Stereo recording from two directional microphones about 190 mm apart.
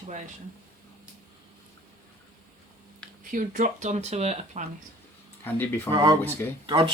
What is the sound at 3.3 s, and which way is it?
Speech, 45° right (ahead or behind).